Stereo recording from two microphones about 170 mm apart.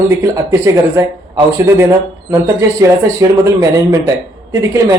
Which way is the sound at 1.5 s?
15° right (ahead or behind).